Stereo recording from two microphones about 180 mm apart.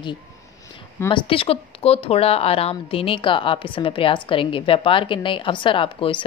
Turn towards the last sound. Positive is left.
turn(degrees=30)  # may be behind; listen again after turning